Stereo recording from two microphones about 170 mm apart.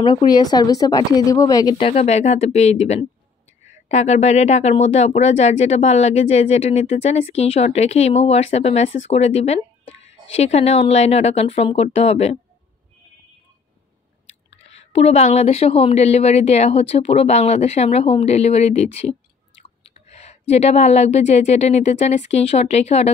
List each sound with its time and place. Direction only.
0.0 s a woman's voice: 30° left (ahead or behind)
1.8 s speech: 40° left (ahead or behind)
14.6 s speech: 35° left (ahead or behind)